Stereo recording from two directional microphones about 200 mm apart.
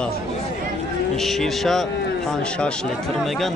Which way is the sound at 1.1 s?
Centre (ahead or behind).